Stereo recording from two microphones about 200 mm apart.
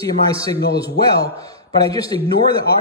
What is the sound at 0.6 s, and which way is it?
Speech, 55° left (ahead or behind).